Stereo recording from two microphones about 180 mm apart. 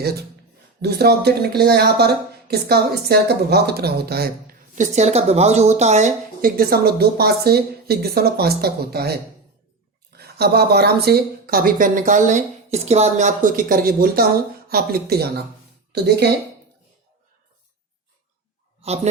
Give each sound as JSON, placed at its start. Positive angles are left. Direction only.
{"t": 0.0, "sound": "speech", "side_deg": -60}
{"t": 4.7, "sound": "speech", "side_deg": -40}
{"t": 6.4, "sound": "a woman's voice", "side_deg": -55}